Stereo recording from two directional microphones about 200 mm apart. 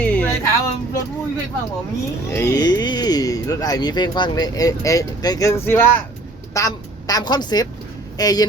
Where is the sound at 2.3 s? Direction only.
15° left (ahead or behind).